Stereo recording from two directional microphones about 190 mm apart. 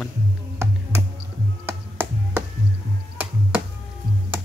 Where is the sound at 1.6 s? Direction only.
10° right (ahead or behind).